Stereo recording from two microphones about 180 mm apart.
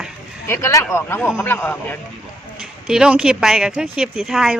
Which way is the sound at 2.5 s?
5° right (ahead or behind).